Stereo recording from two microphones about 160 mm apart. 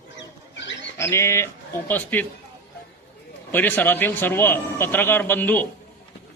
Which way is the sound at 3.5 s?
10° left (ahead or behind).